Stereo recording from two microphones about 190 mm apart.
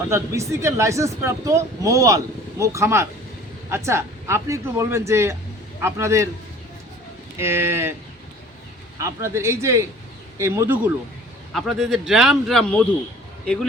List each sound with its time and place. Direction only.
0.1 s speech: 15° right (ahead or behind)
7.3 s speech: 15° right (ahead or behind)
9.0 s speech: 15° right (ahead or behind)
11.5 s speech: centre (ahead or behind)